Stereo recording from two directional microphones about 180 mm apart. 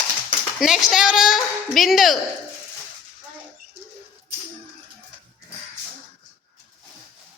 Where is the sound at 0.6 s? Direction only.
Centre (ahead or behind).